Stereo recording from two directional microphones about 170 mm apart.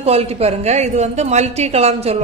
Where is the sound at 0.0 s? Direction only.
35° right (ahead or behind).